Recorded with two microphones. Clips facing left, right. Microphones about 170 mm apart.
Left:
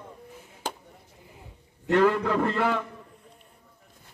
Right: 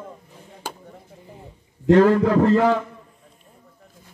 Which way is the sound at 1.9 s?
40° right (ahead or behind).